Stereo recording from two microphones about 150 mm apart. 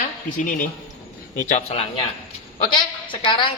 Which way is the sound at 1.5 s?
40° left (ahead or behind).